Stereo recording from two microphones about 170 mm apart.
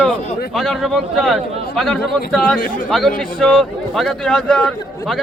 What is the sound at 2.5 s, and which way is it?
Speech, 50° left (ahead or behind).